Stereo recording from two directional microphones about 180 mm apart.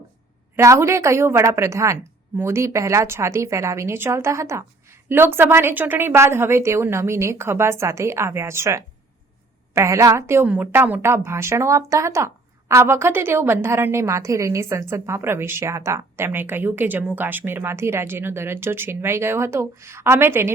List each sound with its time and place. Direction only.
0.5 s a woman's voice: 15° right (ahead or behind)